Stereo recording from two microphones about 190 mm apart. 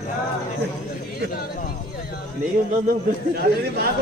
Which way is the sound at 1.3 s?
50° left (ahead or behind).